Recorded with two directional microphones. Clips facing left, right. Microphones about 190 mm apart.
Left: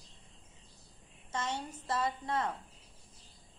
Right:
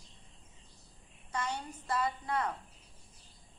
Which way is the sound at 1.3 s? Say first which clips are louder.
Even; 25° left (ahead or behind).